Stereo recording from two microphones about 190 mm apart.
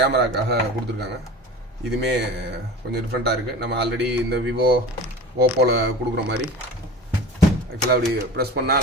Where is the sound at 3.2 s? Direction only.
60° right (ahead or behind).